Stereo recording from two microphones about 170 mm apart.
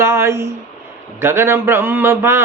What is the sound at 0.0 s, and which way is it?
Speech, 15° right (ahead or behind).